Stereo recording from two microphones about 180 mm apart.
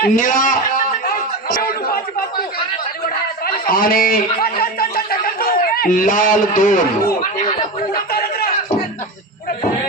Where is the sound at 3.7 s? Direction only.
55° left (ahead or behind).